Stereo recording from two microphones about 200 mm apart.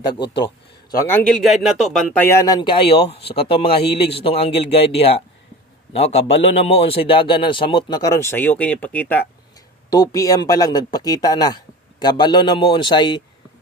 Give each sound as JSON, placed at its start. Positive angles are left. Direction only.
{"t": 0.2, "sound": "a man's voice", "side_deg": 60}
{"t": 0.9, "sound": "a man's voice", "side_deg": 10}